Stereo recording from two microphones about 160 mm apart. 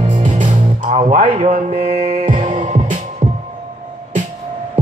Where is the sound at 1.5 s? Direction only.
45° right (ahead or behind).